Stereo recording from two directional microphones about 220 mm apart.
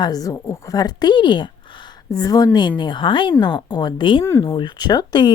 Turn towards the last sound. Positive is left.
turn(degrees=20)  # may be behind; listen again after turning